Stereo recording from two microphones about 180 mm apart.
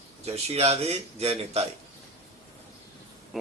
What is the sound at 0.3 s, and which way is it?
A man's voice, 35° right (ahead or behind).